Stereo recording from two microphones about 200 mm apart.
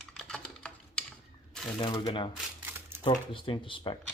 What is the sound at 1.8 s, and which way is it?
Speech, 20° left (ahead or behind).